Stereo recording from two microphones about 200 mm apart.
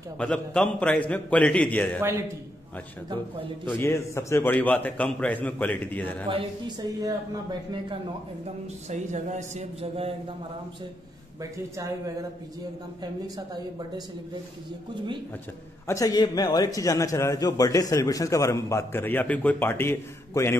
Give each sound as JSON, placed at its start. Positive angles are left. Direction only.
{"t": 0.2, "sound": "a man's voice", "side_deg": 5}
{"t": 2.0, "sound": "a man's voice", "side_deg": -10}
{"t": 3.6, "sound": "a man's voice", "side_deg": 10}
{"t": 6.3, "sound": "speech", "side_deg": -20}
{"t": 8.9, "sound": "speech", "side_deg": -35}
{"t": 15.9, "sound": "a man's voice", "side_deg": 15}